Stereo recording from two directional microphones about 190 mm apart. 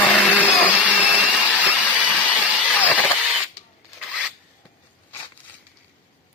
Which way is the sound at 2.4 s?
5° right (ahead or behind).